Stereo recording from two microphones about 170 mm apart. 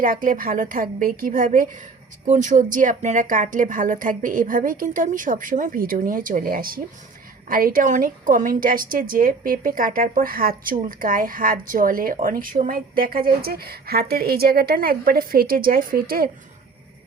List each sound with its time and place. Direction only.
0.0 s speech: 50° right (ahead or behind)